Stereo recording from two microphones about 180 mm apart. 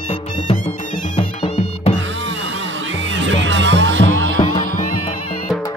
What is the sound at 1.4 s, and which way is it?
Music, 35° left (ahead or behind).